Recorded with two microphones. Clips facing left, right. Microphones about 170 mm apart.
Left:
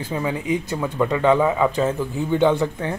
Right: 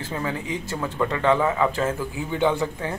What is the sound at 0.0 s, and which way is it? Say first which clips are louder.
Speech: left 4 dB; 15° left (ahead or behind).